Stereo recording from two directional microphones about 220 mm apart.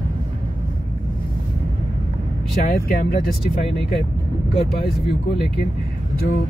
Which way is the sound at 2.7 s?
45° left (ahead or behind).